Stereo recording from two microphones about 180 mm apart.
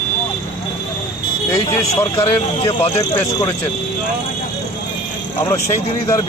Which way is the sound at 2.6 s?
35° left (ahead or behind).